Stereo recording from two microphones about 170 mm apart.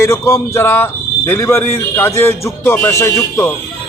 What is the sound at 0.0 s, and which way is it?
Speech, 15° left (ahead or behind).